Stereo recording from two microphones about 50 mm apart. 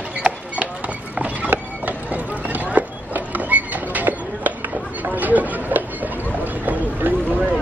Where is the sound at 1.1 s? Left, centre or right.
Right.